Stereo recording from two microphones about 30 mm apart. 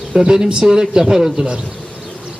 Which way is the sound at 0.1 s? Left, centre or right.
Right.